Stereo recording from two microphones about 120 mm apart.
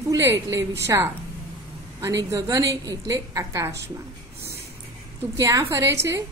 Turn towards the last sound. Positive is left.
turn(degrees=-25)  # may be behind; listen again after turning